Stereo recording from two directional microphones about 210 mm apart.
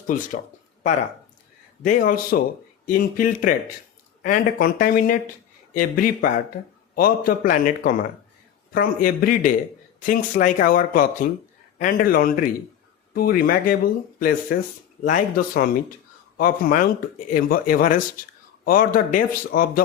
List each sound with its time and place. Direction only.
0.1 s speech: 40° left (ahead or behind)
1.8 s speech: 40° left (ahead or behind)